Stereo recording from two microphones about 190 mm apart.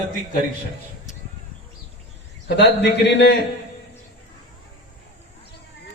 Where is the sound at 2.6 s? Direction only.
65° left (ahead or behind).